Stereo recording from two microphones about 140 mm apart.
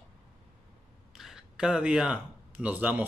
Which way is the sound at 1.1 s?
5° right (ahead or behind).